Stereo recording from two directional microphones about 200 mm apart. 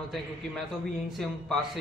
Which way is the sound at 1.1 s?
Centre (ahead or behind).